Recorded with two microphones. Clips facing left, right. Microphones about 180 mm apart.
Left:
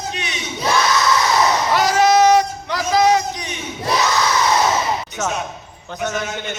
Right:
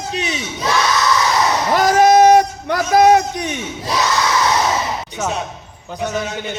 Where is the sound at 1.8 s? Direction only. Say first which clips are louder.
Right 4 dB; 50° right (ahead or behind).